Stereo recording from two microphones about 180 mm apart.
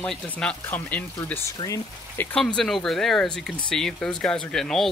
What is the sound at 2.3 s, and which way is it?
Speech, 5° left (ahead or behind).